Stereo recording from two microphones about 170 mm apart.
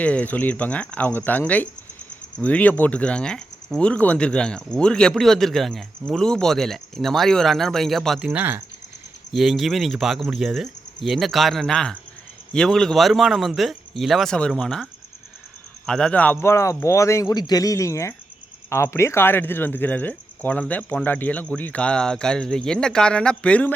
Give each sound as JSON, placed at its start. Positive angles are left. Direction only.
{"t": 0.0, "sound": "speech", "side_deg": 10}
{"t": 15.9, "sound": "speech", "side_deg": 5}